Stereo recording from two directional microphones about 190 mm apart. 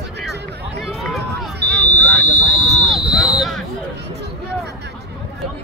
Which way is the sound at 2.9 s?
Centre (ahead or behind).